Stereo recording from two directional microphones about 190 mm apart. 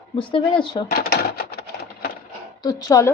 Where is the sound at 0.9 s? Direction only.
55° left (ahead or behind).